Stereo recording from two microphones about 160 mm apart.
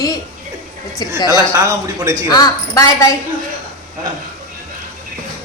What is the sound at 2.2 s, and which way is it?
Speech, 25° left (ahead or behind).